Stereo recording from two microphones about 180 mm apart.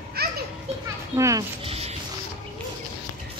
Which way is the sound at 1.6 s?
35° right (ahead or behind).